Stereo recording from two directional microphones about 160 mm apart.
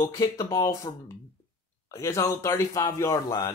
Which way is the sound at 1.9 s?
20° left (ahead or behind).